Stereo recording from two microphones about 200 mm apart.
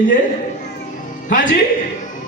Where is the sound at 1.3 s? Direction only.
40° left (ahead or behind).